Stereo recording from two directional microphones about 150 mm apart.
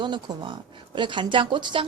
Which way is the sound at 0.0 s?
30° right (ahead or behind).